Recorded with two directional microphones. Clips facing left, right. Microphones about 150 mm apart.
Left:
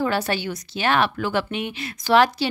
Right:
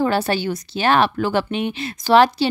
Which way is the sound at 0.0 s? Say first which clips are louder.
Right 4 dB; 35° right (ahead or behind).